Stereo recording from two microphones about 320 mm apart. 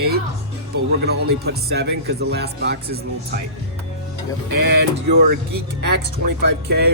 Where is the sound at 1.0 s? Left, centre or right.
Right.